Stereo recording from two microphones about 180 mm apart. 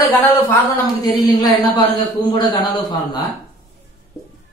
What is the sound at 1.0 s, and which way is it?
A man's voice, 20° left (ahead or behind).